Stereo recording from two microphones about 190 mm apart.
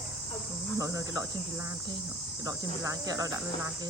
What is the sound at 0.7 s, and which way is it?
Speech, 15° right (ahead or behind).